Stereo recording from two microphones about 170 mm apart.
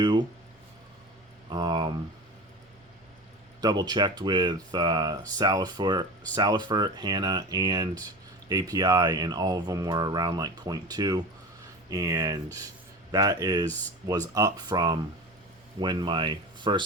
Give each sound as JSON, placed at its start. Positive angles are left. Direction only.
{"t": 0.0, "sound": "speech", "side_deg": -25}
{"t": 1.5, "sound": "speech", "side_deg": -25}
{"t": 3.6, "sound": "speech", "side_deg": -25}